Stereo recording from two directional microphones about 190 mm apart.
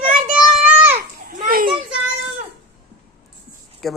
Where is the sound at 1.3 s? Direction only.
50° right (ahead or behind).